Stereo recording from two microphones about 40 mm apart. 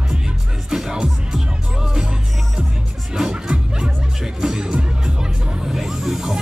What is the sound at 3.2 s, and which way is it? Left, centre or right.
Music, centre.